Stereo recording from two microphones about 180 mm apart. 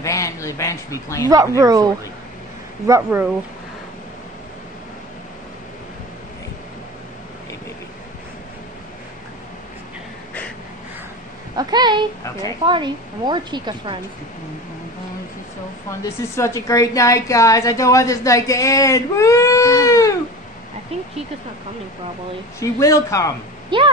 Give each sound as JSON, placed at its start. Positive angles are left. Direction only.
{"t": 0.0, "sound": "a woman's voice", "side_deg": 15}
{"t": 1.6, "sound": "a woman's voice", "side_deg": -20}
{"t": 2.9, "sound": "speech", "side_deg": -10}
{"t": 11.5, "sound": "a woman's voice", "side_deg": -25}
{"t": 16.0, "sound": "a woman's voice", "side_deg": 20}
{"t": 22.6, "sound": "a woman's voice", "side_deg": 15}
{"t": 23.7, "sound": "a woman's voice", "side_deg": -25}